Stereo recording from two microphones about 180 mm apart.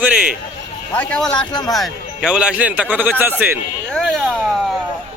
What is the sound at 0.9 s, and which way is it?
Speech, 5° left (ahead or behind).